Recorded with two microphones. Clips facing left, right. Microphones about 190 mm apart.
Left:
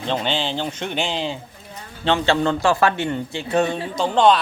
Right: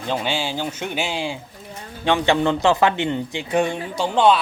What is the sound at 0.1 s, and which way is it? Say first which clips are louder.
Speech: left 1 dB; 10° right (ahead or behind).